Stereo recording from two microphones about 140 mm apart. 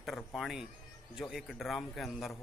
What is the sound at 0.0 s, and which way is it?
Speech, centre (ahead or behind).